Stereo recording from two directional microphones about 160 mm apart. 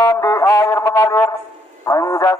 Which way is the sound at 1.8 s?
20° left (ahead or behind).